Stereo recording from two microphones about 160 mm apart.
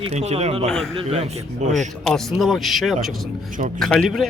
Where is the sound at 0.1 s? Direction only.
45° right (ahead or behind).